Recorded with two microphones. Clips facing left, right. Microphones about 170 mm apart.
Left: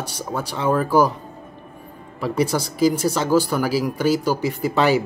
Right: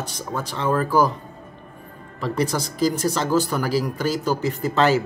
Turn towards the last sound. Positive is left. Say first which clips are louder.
# left 1 dB
turn(degrees=10)  # may be behind; listen again after turning